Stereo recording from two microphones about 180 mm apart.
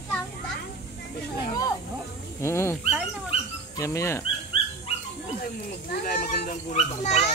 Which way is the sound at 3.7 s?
15° left (ahead or behind).